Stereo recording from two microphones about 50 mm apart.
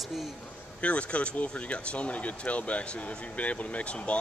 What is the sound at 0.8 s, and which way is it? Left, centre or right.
Speech, left.